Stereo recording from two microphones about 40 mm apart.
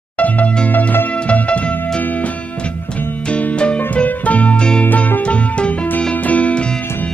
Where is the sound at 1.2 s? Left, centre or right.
Left.